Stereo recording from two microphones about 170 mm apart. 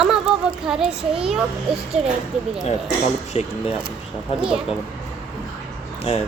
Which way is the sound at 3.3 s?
40° left (ahead or behind).